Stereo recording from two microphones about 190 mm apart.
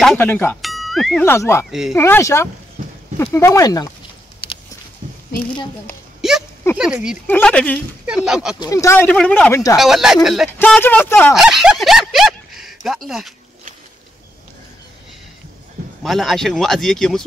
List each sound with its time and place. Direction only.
0.0 s speech: 5° left (ahead or behind)
0.6 s music: centre (ahead or behind)
1.2 s speech: 15° left (ahead or behind)
1.7 s speech: centre (ahead or behind)
2.0 s speech: 15° left (ahead or behind)
6.2 s a sound: centre (ahead or behind)
6.8 s speech: 5° right (ahead or behind)
7.2 s speech: 10° left (ahead or behind)
8.1 s speech: 5° right (ahead or behind)
8.5 s speech: 15° left (ahead or behind); by 10.5 s centre (ahead or behind)
10.6 s speech: 10° left (ahead or behind)
11.3 s speech: centre (ahead or behind)
16.0 s speech: centre (ahead or behind)